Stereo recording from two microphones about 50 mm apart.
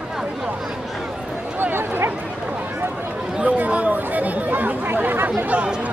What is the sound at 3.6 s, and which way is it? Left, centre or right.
Chatter, right.